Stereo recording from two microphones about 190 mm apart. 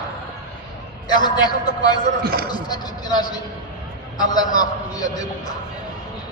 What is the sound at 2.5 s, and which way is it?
A man's voice, 20° left (ahead or behind).